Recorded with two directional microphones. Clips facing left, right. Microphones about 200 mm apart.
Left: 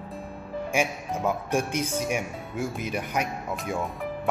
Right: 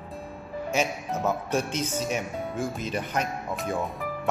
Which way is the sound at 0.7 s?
10° left (ahead or behind).